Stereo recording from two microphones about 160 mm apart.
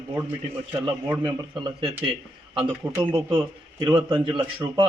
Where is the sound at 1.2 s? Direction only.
30° right (ahead or behind).